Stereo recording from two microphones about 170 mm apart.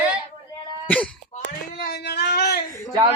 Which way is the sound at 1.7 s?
65° left (ahead or behind).